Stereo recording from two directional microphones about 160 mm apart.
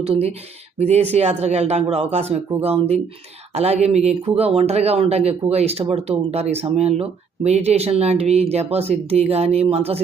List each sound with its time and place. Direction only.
0.0 s speech: 40° right (ahead or behind)